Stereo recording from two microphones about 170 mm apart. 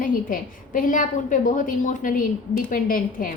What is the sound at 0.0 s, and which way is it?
A woman's voice, 55° left (ahead or behind).